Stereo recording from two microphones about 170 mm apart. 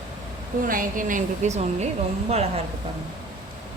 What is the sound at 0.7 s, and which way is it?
Speech, 55° right (ahead or behind).